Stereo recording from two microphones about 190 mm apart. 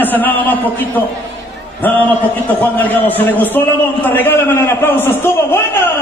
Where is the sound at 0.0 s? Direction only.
10° left (ahead or behind).